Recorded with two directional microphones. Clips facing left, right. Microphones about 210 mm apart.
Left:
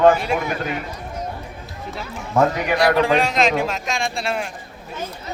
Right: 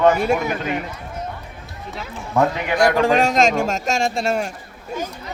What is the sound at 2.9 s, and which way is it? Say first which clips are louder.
Speech: right 2 dB; 45° right (ahead or behind).